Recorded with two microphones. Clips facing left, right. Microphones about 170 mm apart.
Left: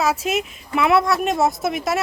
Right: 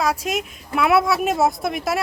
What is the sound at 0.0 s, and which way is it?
Speech, 5° left (ahead or behind).